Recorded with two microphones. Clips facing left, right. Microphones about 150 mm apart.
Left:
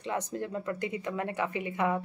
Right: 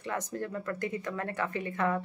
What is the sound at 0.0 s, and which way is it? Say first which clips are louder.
Speech: left 1 dB; 20° left (ahead or behind).